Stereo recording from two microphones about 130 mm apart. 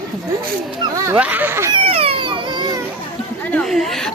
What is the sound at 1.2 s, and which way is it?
Speech, 15° right (ahead or behind).